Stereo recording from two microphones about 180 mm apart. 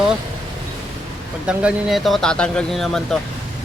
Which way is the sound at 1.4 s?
5° right (ahead or behind).